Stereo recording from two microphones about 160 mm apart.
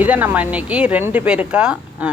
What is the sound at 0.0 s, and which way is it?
Speech, 10° right (ahead or behind).